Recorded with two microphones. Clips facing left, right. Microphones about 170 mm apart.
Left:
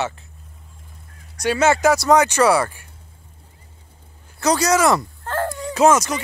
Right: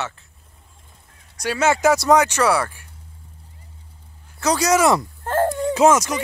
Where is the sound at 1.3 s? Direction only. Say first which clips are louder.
Left 2 dB; 5° right (ahead or behind).